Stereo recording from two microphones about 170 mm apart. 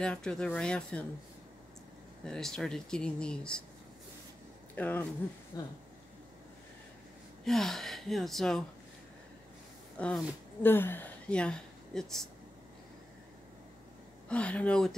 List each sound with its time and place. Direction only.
0.0 s speech: 5° left (ahead or behind)
2.2 s speech: 5° left (ahead or behind)
4.7 s speech: 10° left (ahead or behind)
5.5 s speech: 20° left (ahead or behind)
7.4 s speech: centre (ahead or behind)
9.9 s speech: 5° left (ahead or behind)
14.3 s speech: 10° left (ahead or behind)